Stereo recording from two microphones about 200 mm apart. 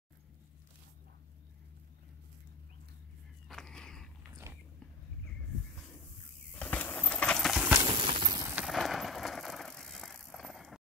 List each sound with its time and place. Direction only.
3.4 s dog: 5° left (ahead or behind)
6.5 s horse: 5° left (ahead or behind)
7.7 s a sound: 20° right (ahead or behind)
8.5 s bicycle: centre (ahead or behind)